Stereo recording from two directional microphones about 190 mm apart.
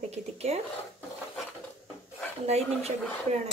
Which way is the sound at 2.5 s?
35° right (ahead or behind).